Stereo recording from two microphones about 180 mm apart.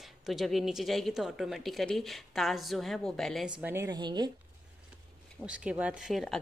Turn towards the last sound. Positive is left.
turn(degrees=0)  # may be behind; listen again after turning